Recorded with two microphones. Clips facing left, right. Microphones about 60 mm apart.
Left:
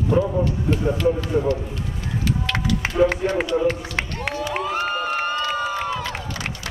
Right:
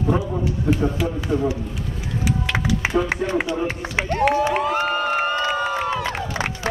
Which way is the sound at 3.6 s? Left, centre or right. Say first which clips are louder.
Left 1 dB; right.